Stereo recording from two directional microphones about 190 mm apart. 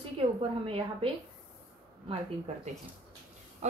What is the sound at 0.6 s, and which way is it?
Speech, 30° right (ahead or behind).